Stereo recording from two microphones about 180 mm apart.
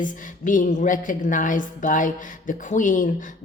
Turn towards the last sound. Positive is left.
turn(degrees=45)  # may be behind; listen again after turning